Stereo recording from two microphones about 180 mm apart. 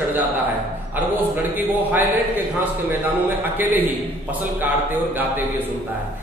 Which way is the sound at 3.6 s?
10° right (ahead or behind).